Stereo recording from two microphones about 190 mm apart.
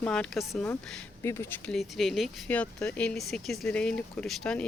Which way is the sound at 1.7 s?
Centre (ahead or behind).